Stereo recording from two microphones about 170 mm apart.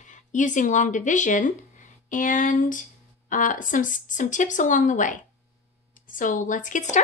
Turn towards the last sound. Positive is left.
turn(degrees=50)  # may be behind; listen again after turning